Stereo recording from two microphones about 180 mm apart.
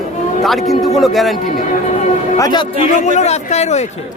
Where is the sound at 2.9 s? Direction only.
40° left (ahead or behind).